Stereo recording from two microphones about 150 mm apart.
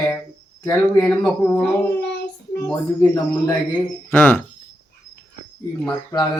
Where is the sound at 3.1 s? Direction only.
15° left (ahead or behind).